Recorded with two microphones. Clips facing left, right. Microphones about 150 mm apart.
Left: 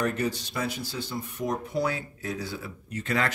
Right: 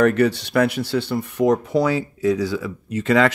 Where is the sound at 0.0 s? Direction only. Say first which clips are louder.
Right 11 dB; 70° right (ahead or behind).